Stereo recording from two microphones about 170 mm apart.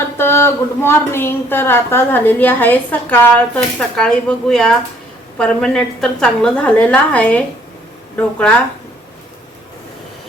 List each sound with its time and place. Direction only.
0.2 s a woman's voice: 15° left (ahead or behind)